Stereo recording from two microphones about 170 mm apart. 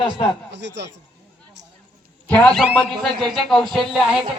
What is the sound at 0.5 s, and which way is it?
Speech, 90° right.